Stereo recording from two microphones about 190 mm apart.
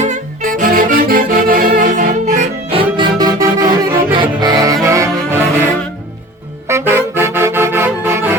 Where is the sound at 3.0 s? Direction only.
20° right (ahead or behind).